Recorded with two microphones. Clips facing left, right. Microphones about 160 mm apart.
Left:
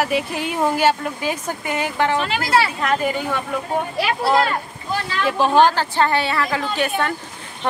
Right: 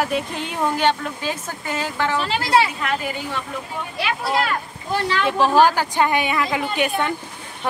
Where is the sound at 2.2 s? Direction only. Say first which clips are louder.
Even; 30° right (ahead or behind).